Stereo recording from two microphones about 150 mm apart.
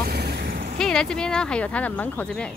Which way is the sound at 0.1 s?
90° right.